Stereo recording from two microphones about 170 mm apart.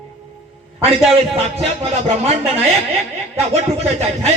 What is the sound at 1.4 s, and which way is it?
A man's voice, 40° right (ahead or behind).